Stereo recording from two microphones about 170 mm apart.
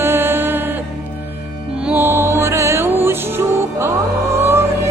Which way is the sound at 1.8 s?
15° right (ahead or behind).